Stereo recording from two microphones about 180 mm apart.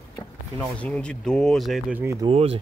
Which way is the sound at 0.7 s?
5° left (ahead or behind).